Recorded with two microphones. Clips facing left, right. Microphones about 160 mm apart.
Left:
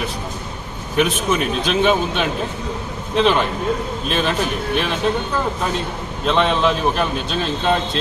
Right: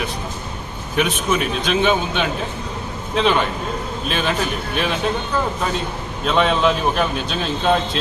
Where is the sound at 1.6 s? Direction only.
Centre (ahead or behind).